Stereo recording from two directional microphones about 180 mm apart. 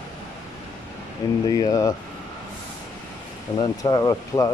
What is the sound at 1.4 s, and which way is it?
Speech, 20° left (ahead or behind).